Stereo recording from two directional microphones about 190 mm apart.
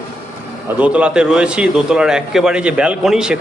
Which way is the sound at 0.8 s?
5° right (ahead or behind).